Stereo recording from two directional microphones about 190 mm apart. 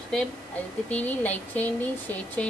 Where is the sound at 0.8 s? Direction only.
10° left (ahead or behind).